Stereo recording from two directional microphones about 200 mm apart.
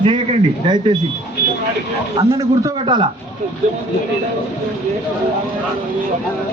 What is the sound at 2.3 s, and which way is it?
Speech, 15° right (ahead or behind).